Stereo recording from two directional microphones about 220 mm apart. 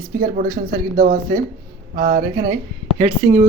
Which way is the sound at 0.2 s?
40° right (ahead or behind).